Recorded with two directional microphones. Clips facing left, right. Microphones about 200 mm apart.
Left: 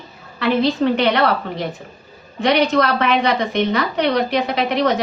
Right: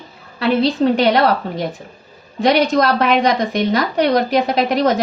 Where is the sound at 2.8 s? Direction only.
40° right (ahead or behind).